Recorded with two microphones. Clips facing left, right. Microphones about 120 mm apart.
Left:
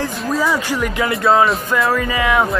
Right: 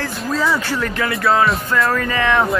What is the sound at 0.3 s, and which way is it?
Speech, 15° left (ahead or behind).